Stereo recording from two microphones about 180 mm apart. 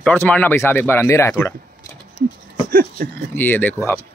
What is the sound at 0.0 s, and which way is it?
Speech, 10° left (ahead or behind).